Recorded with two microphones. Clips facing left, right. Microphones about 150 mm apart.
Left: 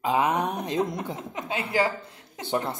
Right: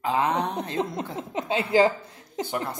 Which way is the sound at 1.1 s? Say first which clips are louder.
Right 5 dB; 25° right (ahead or behind).